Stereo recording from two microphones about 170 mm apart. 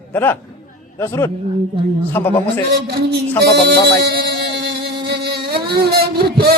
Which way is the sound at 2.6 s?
70° right (ahead or behind).